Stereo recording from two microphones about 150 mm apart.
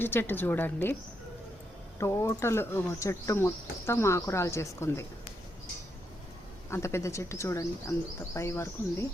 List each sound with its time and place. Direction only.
0.0 s speech: 15° left (ahead or behind)
2.0 s speech: 20° left (ahead or behind)
6.7 s speech: 15° left (ahead or behind)